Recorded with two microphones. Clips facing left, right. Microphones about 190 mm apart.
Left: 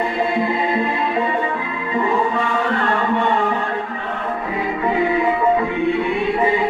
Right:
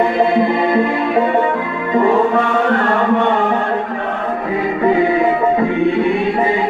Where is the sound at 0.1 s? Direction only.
65° right (ahead or behind).